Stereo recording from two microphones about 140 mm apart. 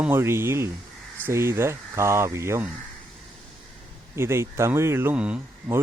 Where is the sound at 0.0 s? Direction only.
15° right (ahead or behind).